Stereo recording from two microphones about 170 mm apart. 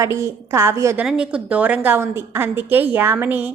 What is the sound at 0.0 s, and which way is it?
A woman's voice, 15° right (ahead or behind).